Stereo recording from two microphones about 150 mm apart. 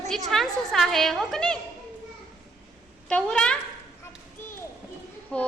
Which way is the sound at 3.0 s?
5° left (ahead or behind).